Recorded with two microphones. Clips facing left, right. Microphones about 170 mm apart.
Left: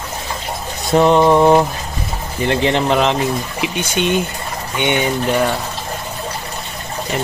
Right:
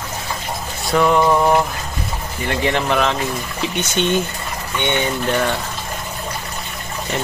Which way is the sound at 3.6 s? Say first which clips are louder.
Right 2 dB; 10° left (ahead or behind).